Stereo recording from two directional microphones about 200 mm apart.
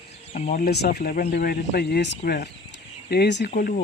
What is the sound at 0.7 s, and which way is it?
Speech, 55° left (ahead or behind).